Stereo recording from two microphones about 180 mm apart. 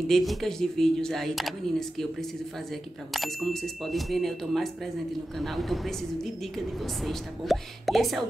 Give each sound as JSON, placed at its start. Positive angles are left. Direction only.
{"t": 0.1, "sound": "speech", "side_deg": 0}
{"t": 3.1, "sound": "speech", "side_deg": 0}
{"t": 7.1, "sound": "speech", "side_deg": 0}